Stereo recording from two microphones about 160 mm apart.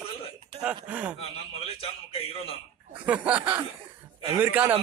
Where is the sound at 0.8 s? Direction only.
10° right (ahead or behind).